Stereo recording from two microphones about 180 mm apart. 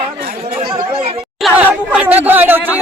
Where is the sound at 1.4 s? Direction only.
5° right (ahead or behind).